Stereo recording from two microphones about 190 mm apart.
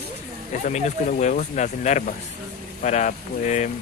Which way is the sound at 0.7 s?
35° left (ahead or behind).